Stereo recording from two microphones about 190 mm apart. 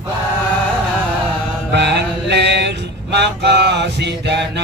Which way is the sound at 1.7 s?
65° right (ahead or behind).